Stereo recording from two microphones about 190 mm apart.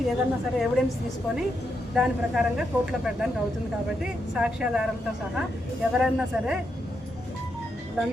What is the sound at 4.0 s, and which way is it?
Speech, 5° right (ahead or behind).